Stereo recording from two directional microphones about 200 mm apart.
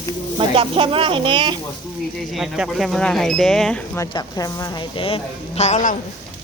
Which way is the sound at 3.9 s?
20° left (ahead or behind).